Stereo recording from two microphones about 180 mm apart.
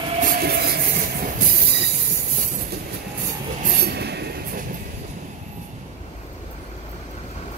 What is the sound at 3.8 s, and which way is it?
Train, 65° right (ahead or behind).